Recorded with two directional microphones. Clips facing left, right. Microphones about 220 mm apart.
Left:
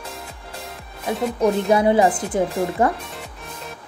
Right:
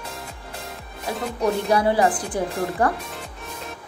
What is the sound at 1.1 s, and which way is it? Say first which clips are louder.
Speech: left 4 dB; centre (ahead or behind).